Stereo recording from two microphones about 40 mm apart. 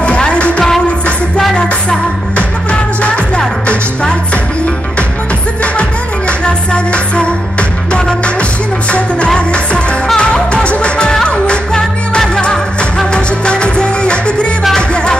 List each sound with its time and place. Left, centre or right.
0.0 s music: left
5.6 s music: left
9.5 s music: left